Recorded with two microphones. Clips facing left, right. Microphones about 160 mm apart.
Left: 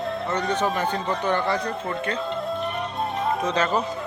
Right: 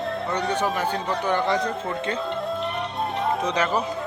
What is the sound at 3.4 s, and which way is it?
Speech, 15° right (ahead or behind).